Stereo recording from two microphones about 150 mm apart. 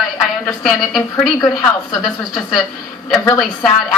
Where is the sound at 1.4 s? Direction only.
25° left (ahead or behind).